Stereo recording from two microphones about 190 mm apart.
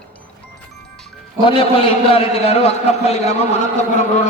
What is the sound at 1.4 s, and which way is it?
A man's voice, 30° left (ahead or behind).